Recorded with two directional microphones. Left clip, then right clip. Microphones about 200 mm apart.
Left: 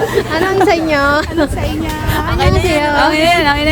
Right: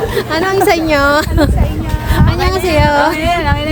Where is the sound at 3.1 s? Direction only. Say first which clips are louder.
Left 4 dB; 45° left (ahead or behind).